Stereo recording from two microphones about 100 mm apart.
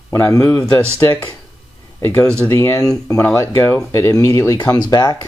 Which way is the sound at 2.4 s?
30° left (ahead or behind).